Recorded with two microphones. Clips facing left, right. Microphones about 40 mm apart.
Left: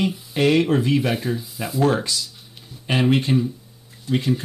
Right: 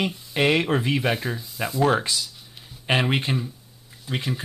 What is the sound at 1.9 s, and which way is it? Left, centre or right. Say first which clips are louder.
Speech: even; centre.